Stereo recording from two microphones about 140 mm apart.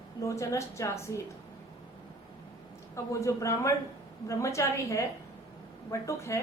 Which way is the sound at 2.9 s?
20° left (ahead or behind).